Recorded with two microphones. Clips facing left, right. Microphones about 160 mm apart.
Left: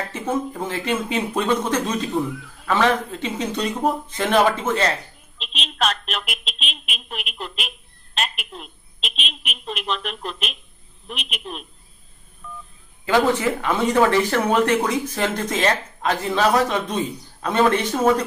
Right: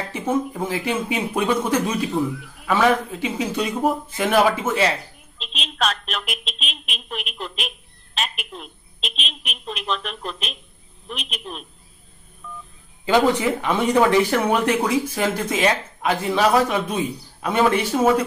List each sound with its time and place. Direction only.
0.1 s a woman's voice: 10° right (ahead or behind)
9.2 s speech: 40° right (ahead or behind)
9.7 s speech: centre (ahead or behind)
13.0 s speech: 15° right (ahead or behind)